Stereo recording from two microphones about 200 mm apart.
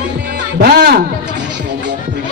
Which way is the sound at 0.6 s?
50° right (ahead or behind).